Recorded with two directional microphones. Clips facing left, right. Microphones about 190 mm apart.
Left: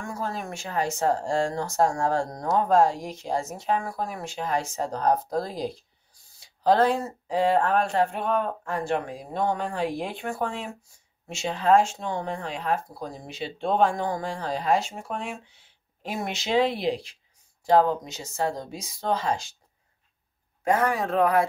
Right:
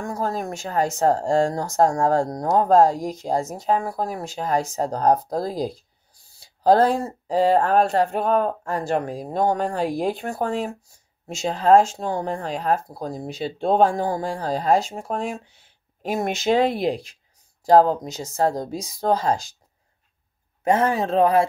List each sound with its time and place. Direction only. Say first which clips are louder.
0.0 s speech: right 6 dB; 40° right (ahead or behind)
20.6 s speech: right 4 dB; 25° right (ahead or behind)